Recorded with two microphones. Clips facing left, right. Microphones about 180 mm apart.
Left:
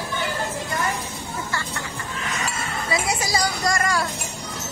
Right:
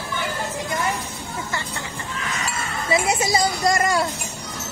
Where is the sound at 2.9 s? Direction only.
25° right (ahead or behind).